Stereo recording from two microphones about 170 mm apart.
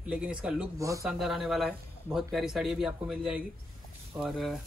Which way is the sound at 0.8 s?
20° right (ahead or behind).